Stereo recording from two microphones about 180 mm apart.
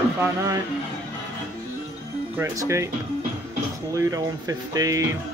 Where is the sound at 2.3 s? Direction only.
15° right (ahead or behind).